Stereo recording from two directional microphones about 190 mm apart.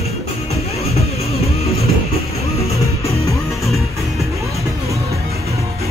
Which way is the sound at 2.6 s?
15° left (ahead or behind).